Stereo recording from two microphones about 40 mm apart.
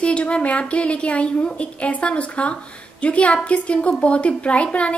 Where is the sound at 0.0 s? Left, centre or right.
Left.